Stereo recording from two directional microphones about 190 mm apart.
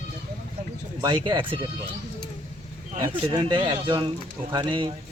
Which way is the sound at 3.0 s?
20° right (ahead or behind).